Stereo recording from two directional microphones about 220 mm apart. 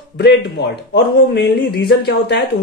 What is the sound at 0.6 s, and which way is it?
Speech, 50° left (ahead or behind).